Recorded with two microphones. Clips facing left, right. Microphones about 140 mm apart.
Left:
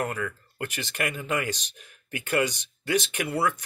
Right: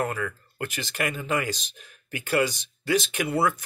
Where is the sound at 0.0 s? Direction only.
Centre (ahead or behind).